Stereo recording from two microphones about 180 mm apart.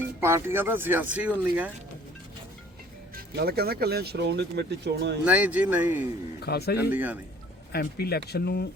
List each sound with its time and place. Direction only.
0.2 s speech: 15° right (ahead or behind)
3.2 s speech: 60° right (ahead or behind)
5.2 s speech: 10° right (ahead or behind)
6.4 s speech: 60° left (ahead or behind)
6.9 s speech: 10° right (ahead or behind)
7.7 s speech: 60° left (ahead or behind)